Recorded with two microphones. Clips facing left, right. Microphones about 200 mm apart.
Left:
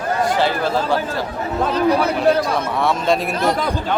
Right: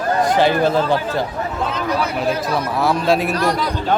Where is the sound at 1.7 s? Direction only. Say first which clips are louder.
Left 6 dB; 35° left (ahead or behind).